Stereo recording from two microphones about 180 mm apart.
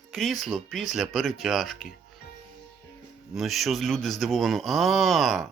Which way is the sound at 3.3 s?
Centre (ahead or behind).